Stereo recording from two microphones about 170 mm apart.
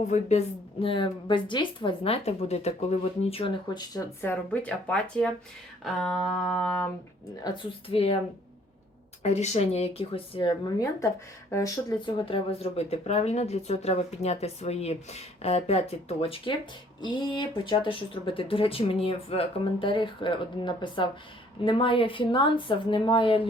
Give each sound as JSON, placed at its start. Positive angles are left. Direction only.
{"t": 0.1, "sound": "speech", "side_deg": 40}
{"t": 4.2, "sound": "speech", "side_deg": 10}
{"t": 5.8, "sound": "a sound", "side_deg": 0}
{"t": 7.4, "sound": "speech", "side_deg": 30}
{"t": 9.2, "sound": "speech", "side_deg": 40}
{"t": 11.5, "sound": "speech", "side_deg": 20}